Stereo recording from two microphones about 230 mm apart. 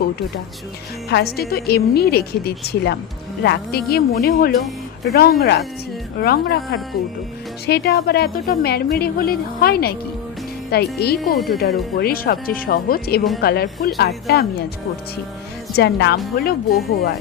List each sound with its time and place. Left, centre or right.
1.1 s a woman's voice: left
7.7 s a woman's voice: left
15.7 s a woman's voice: left